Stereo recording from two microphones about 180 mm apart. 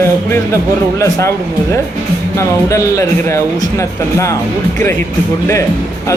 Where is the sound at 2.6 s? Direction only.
15° left (ahead or behind).